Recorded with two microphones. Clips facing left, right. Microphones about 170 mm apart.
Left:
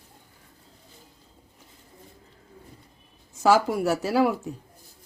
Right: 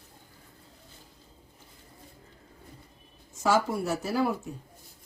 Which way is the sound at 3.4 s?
90° left.